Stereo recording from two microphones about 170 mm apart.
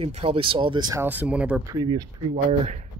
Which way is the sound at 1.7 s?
25° right (ahead or behind).